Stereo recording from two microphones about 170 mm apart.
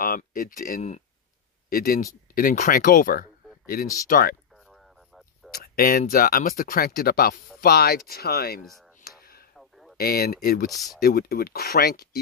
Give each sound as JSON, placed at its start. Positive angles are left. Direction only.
{"t": 0.0, "sound": "speech", "side_deg": 55}
{"t": 5.5, "sound": "speech", "side_deg": 60}
{"t": 9.2, "sound": "a sound", "side_deg": 60}
{"t": 9.6, "sound": "a sound", "side_deg": 0}
{"t": 9.9, "sound": "speech", "side_deg": 65}
{"t": 10.7, "sound": "speech", "side_deg": 0}
{"t": 11.0, "sound": "speech", "side_deg": 65}